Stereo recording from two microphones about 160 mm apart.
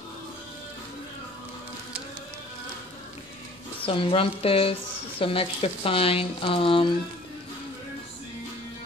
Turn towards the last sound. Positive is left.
turn(degrees=35)  # may be behind; listen again after turning